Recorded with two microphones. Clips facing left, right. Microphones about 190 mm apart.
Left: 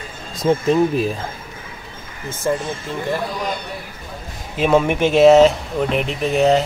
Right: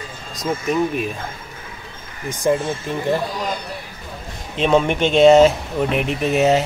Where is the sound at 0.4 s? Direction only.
30° left (ahead or behind).